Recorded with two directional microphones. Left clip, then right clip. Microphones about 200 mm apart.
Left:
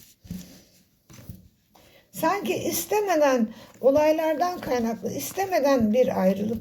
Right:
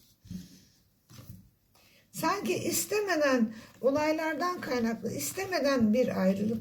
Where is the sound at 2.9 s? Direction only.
45° right (ahead or behind).